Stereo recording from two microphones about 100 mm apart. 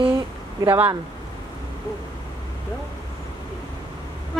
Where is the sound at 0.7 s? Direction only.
20° right (ahead or behind).